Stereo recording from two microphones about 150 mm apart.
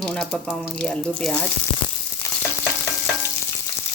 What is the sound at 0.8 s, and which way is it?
Speech, 5° left (ahead or behind).